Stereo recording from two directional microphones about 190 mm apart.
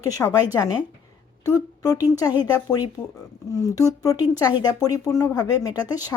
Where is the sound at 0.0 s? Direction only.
20° left (ahead or behind).